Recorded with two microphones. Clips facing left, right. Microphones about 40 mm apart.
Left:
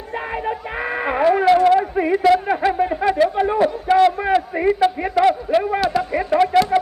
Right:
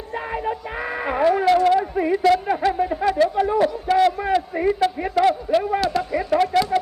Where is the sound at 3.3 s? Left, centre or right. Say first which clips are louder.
Left 1 dB; left.